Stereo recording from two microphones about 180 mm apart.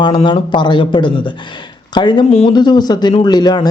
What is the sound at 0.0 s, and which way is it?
A man's voice, 25° left (ahead or behind).